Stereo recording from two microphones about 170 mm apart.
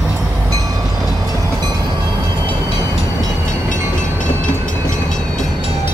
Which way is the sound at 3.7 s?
50° left (ahead or behind).